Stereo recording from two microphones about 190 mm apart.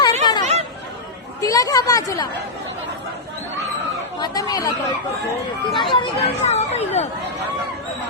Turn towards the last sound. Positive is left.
turn(degrees=35)  # may be behind; listen again after turning